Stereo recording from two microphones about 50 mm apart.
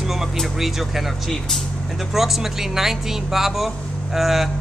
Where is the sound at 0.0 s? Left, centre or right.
Centre.